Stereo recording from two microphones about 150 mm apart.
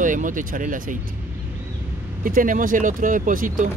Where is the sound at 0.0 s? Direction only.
60° right (ahead or behind).